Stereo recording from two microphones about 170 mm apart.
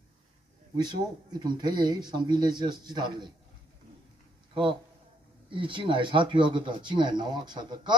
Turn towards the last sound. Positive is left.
turn(degrees=-25)  # may be behind; listen again after turning